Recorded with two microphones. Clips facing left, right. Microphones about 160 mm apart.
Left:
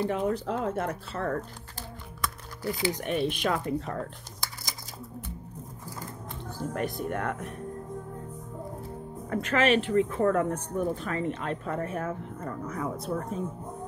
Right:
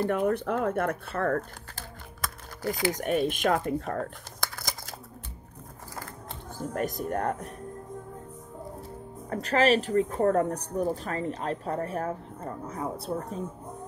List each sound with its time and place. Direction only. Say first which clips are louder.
0.0 s speech: right 2 dB; 55° right (ahead or behind)
6.7 s speech: right 2 dB; 40° right (ahead or behind)
9.3 s speech: right 1 dB; 35° right (ahead or behind)